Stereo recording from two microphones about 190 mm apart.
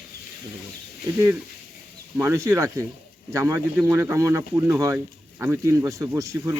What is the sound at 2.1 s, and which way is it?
Speech, 15° right (ahead or behind).